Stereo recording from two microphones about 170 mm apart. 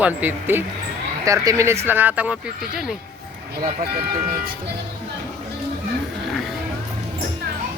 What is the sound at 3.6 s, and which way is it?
Speech, 55° right (ahead or behind).